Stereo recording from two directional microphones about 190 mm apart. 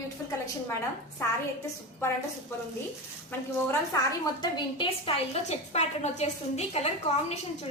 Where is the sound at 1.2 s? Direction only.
15° left (ahead or behind).